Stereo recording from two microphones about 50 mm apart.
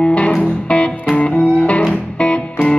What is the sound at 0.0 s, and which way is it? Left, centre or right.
Music, left.